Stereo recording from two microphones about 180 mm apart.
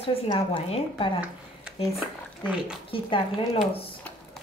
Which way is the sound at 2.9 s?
30° left (ahead or behind).